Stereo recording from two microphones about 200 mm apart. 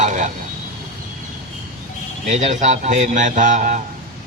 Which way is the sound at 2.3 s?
35° right (ahead or behind).